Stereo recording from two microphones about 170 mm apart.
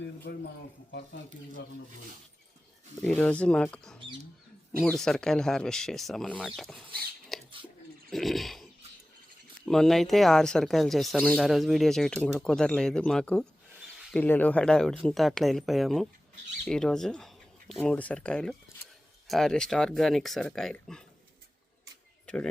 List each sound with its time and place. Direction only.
0.3 s speech: 90° left
3.0 s speech: 5° left (ahead or behind)
7.3 s bird: centre (ahead or behind)
8.1 s speech: centre (ahead or behind)
9.6 s speech: centre (ahead or behind)